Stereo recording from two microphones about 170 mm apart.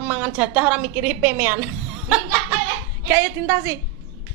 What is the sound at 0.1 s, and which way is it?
A woman's voice, 10° right (ahead or behind).